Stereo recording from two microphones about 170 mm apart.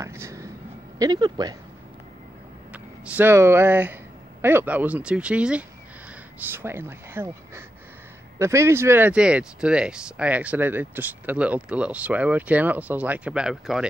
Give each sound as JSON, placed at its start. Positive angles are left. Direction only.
{"t": 0.0, "sound": "speech", "side_deg": -15}
{"t": 2.7, "sound": "speech", "side_deg": -10}